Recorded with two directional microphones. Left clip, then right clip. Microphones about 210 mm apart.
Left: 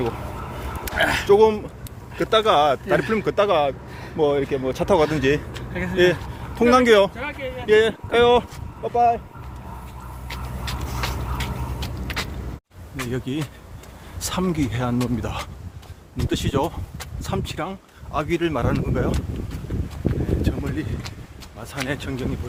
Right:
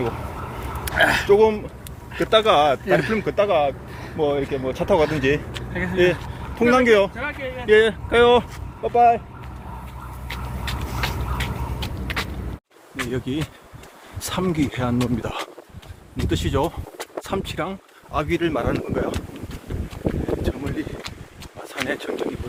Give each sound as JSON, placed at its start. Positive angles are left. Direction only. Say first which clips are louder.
{"t": 0.9, "sound": "speech", "louder": "right 3 dB", "side_deg": -5}
{"t": 1.3, "sound": "a man's voice", "louder": "left 4 dB", "side_deg": 20}
{"t": 2.1, "sound": "speech", "louder": "right 1 dB", "side_deg": 5}
{"t": 3.1, "sound": "a man's voice", "louder": "even", "side_deg": 25}
{"t": 7.3, "sound": "speech", "louder": "right 1 dB", "side_deg": 0}
{"t": 10.2, "sound": "vehicle", "louder": "right 1 dB", "side_deg": 0}
{"t": 13.0, "sound": "speech", "louder": "right 2 dB", "side_deg": 0}
{"t": 20.4, "sound": "a sound", "louder": "even", "side_deg": 5}